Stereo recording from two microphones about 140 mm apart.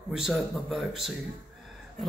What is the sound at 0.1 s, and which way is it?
Speech, 5° right (ahead or behind).